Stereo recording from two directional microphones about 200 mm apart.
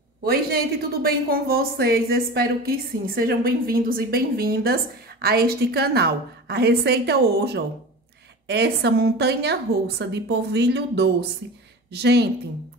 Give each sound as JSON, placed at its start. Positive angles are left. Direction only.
{"t": 0.2, "sound": "a woman's voice", "side_deg": -50}